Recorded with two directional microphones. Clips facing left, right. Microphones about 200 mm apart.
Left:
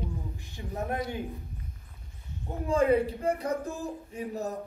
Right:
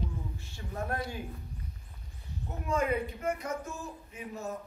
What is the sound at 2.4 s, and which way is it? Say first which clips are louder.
A man's voice: left 6 dB; 30° left (ahead or behind).